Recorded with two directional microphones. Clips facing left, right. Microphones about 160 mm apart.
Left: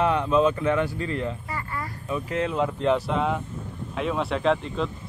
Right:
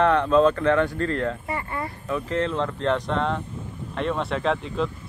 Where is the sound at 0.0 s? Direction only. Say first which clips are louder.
Right 3 dB; 10° left (ahead or behind).